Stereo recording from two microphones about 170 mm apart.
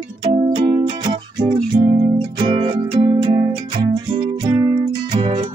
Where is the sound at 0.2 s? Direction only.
30° right (ahead or behind).